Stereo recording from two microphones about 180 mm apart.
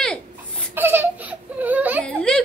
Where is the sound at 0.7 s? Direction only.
10° right (ahead or behind).